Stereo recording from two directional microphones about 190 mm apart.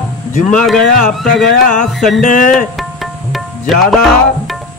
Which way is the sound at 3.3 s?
Centre (ahead or behind).